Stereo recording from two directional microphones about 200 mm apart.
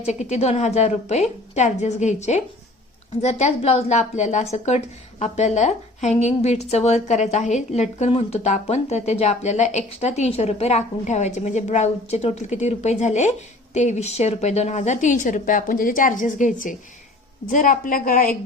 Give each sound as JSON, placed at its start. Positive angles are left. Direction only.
{"t": 0.0, "sound": "a woman's voice", "side_deg": 35}